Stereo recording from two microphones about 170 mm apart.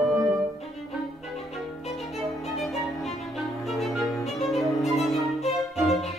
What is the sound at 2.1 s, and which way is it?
Violin, centre (ahead or behind).